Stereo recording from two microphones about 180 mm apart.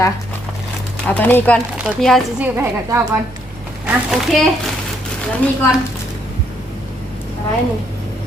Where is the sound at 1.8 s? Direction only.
Centre (ahead or behind).